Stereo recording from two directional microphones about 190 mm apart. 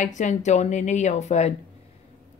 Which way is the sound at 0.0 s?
40° left (ahead or behind).